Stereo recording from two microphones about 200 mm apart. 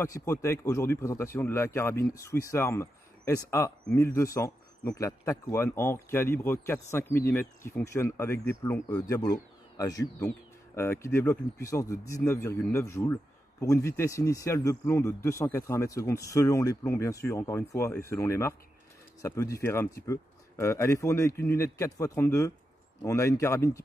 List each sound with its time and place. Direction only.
0.0 s a man's voice: 15° left (ahead or behind)